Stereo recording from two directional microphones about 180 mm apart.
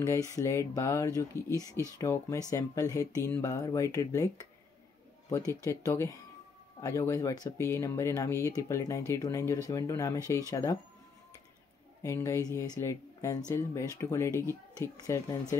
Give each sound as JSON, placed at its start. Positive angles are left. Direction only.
{"t": 0.1, "sound": "speech", "side_deg": 20}
{"t": 1.7, "sound": "speech", "side_deg": -15}
{"t": 2.0, "sound": "speech", "side_deg": 20}
{"t": 5.5, "sound": "speech", "side_deg": 15}
{"t": 12.0, "sound": "speech", "side_deg": 15}